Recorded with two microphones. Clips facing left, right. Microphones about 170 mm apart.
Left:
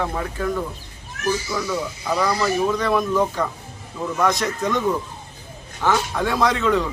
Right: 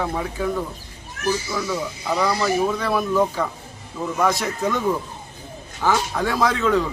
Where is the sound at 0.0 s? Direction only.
5° right (ahead or behind).